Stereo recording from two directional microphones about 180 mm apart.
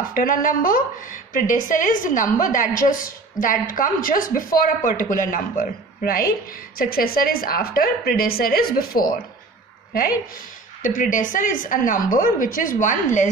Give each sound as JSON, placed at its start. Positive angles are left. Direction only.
{"t": 0.1, "sound": "a woman's voice", "side_deg": 50}
{"t": 10.8, "sound": "a woman's voice", "side_deg": 45}